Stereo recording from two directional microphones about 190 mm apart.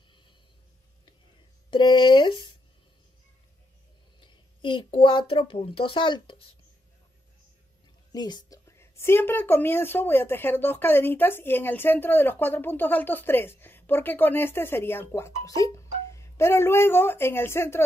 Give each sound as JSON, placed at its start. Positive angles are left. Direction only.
{"t": 1.7, "sound": "speech", "side_deg": 20}
{"t": 4.2, "sound": "speech", "side_deg": 25}
{"t": 8.1, "sound": "a woman's voice", "side_deg": 20}